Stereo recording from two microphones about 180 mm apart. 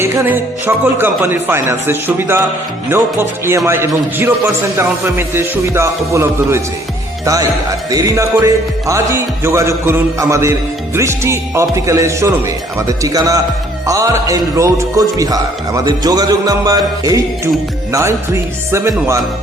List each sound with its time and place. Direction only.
0.0 s music: 10° right (ahead or behind)
7.9 s music: 15° right (ahead or behind)
18.7 s music: 15° right (ahead or behind)